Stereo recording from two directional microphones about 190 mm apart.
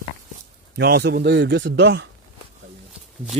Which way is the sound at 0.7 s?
60° right (ahead or behind).